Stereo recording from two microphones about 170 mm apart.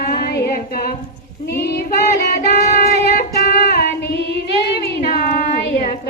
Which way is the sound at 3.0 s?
60° left (ahead or behind).